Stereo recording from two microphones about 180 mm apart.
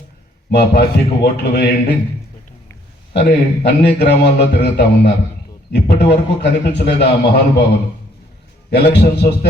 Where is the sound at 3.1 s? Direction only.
70° left (ahead or behind).